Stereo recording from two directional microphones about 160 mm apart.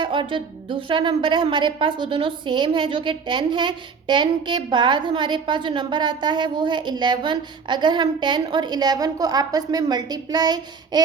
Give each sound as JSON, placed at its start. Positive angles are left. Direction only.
{"t": 0.0, "sound": "speech", "side_deg": -30}